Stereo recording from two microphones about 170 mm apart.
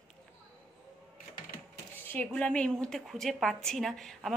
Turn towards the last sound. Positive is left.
turn(degrees=0)  # may be behind; listen again after turning